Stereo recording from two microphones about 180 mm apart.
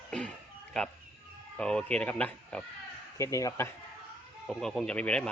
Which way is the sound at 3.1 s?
15° left (ahead or behind).